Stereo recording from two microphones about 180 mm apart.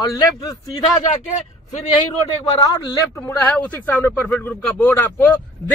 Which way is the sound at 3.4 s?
5° left (ahead or behind).